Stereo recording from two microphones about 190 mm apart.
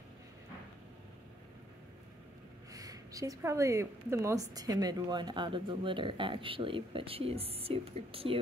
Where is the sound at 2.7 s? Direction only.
20° right (ahead or behind).